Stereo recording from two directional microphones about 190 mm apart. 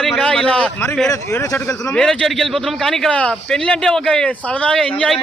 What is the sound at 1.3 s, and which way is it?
Speech, 15° left (ahead or behind).